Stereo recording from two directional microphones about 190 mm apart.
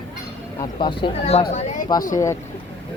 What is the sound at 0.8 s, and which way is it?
Speech, 25° left (ahead or behind).